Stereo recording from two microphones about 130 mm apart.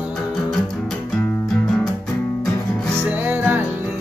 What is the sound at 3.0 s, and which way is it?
Music, 15° right (ahead or behind).